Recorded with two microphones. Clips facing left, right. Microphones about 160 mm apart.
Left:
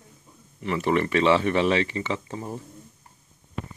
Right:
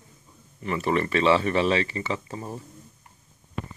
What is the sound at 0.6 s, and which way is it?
Speech, 20° left (ahead or behind).